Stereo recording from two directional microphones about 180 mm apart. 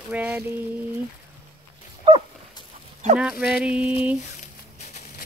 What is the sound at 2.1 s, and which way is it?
Dog, 30° right (ahead or behind).